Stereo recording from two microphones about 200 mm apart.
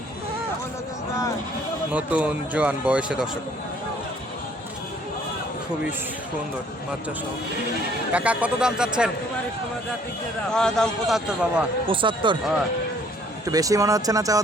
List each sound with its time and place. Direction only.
1.9 s speech: 5° right (ahead or behind)
8.1 s a man's voice: 5° right (ahead or behind)
10.5 s a man's voice: 5° left (ahead or behind)
11.9 s speech: 25° right (ahead or behind)
13.4 s speech: 15° right (ahead or behind)